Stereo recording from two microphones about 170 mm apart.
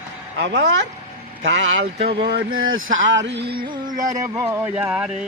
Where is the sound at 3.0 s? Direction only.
90° right.